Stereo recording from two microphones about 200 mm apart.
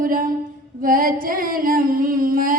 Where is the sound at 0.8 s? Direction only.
45° right (ahead or behind).